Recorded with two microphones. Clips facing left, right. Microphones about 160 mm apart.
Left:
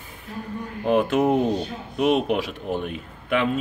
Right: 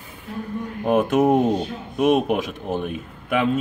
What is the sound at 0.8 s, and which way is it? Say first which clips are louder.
Speech: right 2 dB; 45° right (ahead or behind).